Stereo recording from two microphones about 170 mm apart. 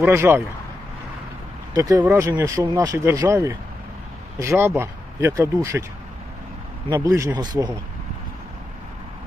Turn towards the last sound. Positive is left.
turn(degrees=-25)  # may be behind; listen again after turning